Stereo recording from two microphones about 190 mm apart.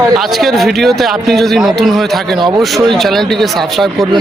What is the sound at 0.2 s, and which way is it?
Speech, centre (ahead or behind).